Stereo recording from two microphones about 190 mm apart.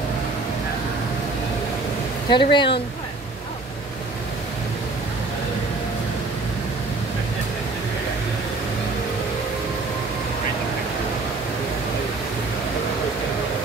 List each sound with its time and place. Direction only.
2.2 s speech: 25° left (ahead or behind)